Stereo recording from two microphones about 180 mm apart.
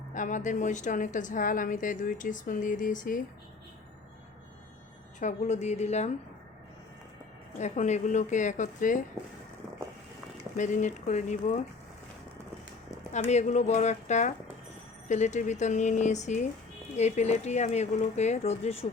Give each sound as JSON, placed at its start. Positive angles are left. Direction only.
{"t": 0.1, "sound": "a woman's voice", "side_deg": 45}
{"t": 5.2, "sound": "speech", "side_deg": 40}
{"t": 7.6, "sound": "a woman's voice", "side_deg": 40}
{"t": 10.6, "sound": "a woman's voice", "side_deg": 45}
{"t": 13.1, "sound": "speech", "side_deg": 40}